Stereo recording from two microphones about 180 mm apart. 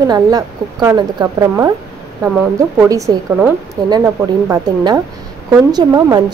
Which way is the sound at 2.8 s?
15° right (ahead or behind).